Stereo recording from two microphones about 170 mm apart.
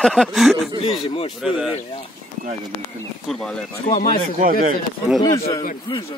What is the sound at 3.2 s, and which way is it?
Speech, 5° left (ahead or behind).